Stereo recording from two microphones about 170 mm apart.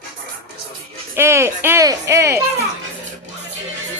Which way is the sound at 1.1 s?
15° right (ahead or behind).